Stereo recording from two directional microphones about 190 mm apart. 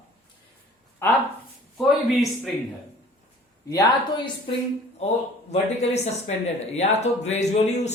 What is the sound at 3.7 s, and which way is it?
Speech, 25° left (ahead or behind).